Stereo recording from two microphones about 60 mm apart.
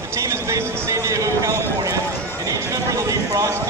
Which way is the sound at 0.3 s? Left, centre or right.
Right.